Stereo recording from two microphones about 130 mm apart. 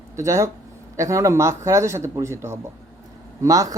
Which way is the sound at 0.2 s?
25° right (ahead or behind).